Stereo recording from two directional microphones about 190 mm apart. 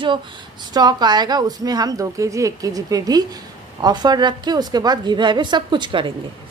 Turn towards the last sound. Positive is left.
turn(degrees=-25)  # may be behind; listen again after turning